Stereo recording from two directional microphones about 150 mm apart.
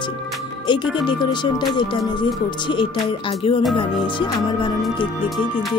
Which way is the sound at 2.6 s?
30° left (ahead or behind).